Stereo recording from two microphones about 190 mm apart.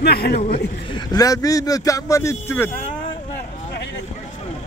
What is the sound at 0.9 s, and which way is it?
Speech, 20° left (ahead or behind).